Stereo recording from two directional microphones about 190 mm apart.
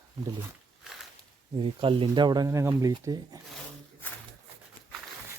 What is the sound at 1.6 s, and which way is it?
Speech, 25° right (ahead or behind).